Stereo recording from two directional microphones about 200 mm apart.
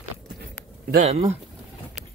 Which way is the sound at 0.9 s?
35° right (ahead or behind).